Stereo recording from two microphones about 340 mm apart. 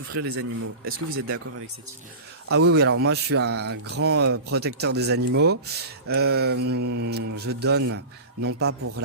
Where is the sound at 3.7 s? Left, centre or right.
Right.